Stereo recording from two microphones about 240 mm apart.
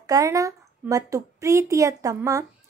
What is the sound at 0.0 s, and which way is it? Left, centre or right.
A woman's voice, centre.